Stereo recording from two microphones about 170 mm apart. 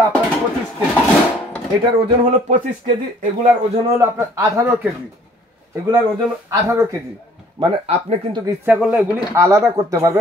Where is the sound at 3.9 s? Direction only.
15° right (ahead or behind).